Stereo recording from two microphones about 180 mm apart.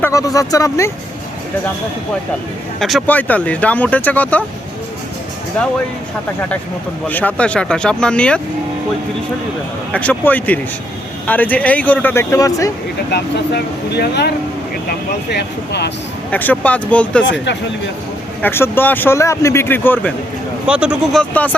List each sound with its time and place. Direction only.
0.0 s speech: 20° left (ahead or behind)
2.8 s speech: 5° left (ahead or behind)
7.1 s speech: 10° left (ahead or behind)
9.9 s speech: 10° left (ahead or behind)
13.1 s speech: 65° left (ahead or behind)
16.3 s speech: 10° left (ahead or behind)
18.4 s speech: 10° left (ahead or behind)
20.7 s speech: 5° right (ahead or behind)